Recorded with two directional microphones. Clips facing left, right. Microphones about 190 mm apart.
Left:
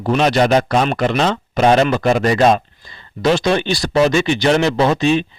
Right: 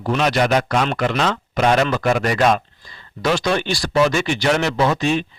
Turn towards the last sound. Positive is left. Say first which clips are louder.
# left 4 dB
turn(degrees=25)  # may be behind; listen again after turning